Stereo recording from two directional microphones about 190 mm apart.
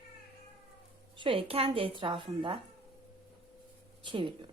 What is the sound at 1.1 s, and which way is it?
Speech, 25° right (ahead or behind).